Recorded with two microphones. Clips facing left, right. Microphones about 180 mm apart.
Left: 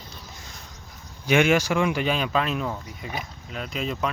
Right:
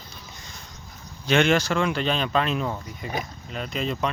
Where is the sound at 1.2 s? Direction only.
10° left (ahead or behind).